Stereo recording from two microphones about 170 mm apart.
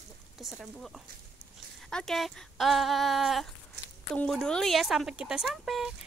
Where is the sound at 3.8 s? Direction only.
80° right.